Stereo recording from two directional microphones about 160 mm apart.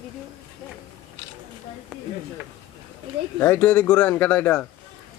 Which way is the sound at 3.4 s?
10° left (ahead or behind).